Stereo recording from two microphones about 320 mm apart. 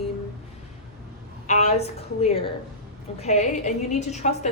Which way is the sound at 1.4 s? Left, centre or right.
Left.